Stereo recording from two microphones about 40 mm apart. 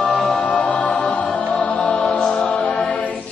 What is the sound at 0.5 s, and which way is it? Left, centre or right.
Music, left.